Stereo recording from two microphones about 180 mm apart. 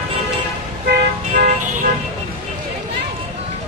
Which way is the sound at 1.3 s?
45° right (ahead or behind).